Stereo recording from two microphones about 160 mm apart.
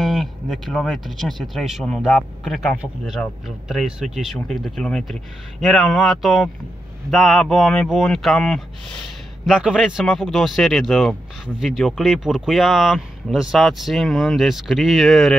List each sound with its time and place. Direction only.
0.0 s speech: centre (ahead or behind)